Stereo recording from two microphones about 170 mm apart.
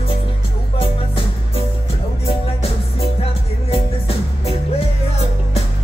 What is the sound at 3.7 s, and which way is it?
Music, 35° left (ahead or behind).